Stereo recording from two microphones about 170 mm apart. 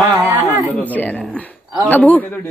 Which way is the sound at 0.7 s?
10° left (ahead or behind).